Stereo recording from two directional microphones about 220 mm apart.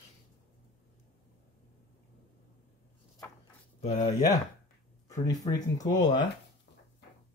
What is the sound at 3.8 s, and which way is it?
Speech, 35° left (ahead or behind).